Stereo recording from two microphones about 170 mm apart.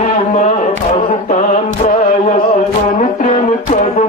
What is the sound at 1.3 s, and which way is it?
Music, 45° left (ahead or behind).